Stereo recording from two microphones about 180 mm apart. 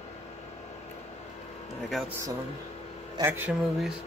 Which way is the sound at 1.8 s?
Centre (ahead or behind).